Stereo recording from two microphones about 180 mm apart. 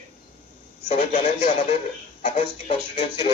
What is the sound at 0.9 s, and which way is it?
Speech, 45° left (ahead or behind).